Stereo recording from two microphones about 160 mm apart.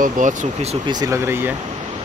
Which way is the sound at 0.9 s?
20° right (ahead or behind).